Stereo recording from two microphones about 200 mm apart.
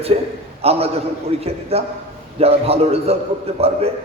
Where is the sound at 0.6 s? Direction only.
30° right (ahead or behind).